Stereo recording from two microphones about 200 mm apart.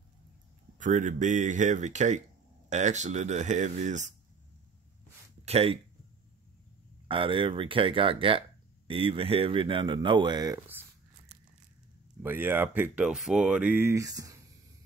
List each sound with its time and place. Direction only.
0.7 s speech: 40° right (ahead or behind)
5.4 s speech: 30° right (ahead or behind)
7.1 s speech: 25° right (ahead or behind)
12.2 s speech: 10° right (ahead or behind)